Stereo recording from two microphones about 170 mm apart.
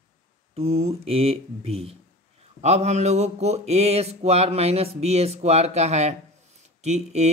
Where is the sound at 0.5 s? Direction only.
35° right (ahead or behind).